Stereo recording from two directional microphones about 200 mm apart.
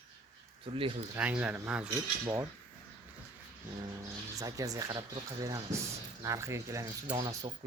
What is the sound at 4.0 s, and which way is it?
Speech, 15° right (ahead or behind).